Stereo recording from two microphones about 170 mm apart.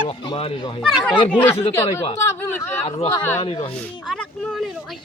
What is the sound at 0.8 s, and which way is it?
Speech, centre (ahead or behind).